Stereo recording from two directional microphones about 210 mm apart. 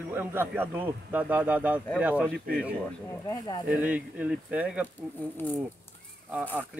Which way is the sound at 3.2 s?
20° left (ahead or behind).